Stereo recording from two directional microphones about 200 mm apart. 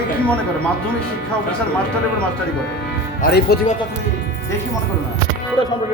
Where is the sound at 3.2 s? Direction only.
55° left (ahead or behind).